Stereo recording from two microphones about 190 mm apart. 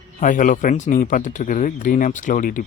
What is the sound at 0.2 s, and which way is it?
Speech, 45° left (ahead or behind).